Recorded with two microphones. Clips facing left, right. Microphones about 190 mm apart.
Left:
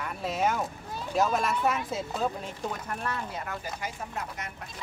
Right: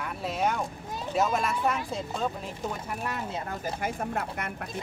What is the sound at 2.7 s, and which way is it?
Speech, 10° right (ahead or behind).